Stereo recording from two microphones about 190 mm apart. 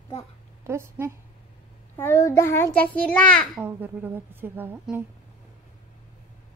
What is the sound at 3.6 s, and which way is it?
A woman's voice, 10° right (ahead or behind).